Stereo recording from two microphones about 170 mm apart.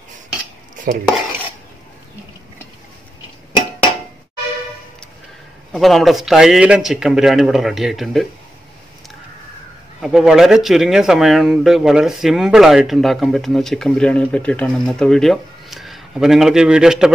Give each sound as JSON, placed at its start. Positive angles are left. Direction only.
{"t": 5.7, "sound": "speech", "side_deg": 0}
{"t": 10.0, "sound": "speech", "side_deg": -5}